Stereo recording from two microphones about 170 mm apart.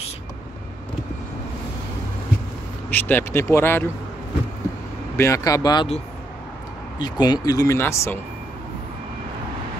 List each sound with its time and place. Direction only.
2.9 s speech: 10° left (ahead or behind)
5.1 s speech: 15° left (ahead or behind)
7.0 s speech: 25° left (ahead or behind)